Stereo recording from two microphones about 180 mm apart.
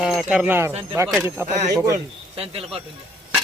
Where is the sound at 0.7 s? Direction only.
30° right (ahead or behind).